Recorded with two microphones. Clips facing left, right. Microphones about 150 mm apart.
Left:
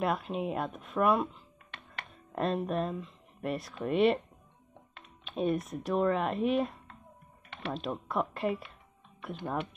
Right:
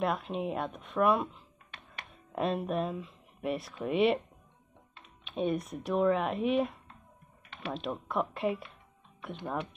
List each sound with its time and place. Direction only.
0.0 s speech: centre (ahead or behind)
5.2 s speech: centre (ahead or behind)
7.4 s typing: 65° left (ahead or behind)
7.7 s speech: centre (ahead or behind)